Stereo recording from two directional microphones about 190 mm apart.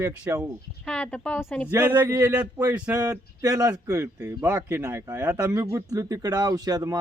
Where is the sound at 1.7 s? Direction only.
10° right (ahead or behind).